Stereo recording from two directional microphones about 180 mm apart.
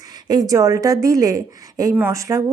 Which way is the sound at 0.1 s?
20° right (ahead or behind).